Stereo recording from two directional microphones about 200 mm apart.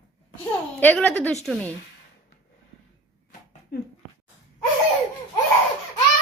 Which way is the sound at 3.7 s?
50° left (ahead or behind).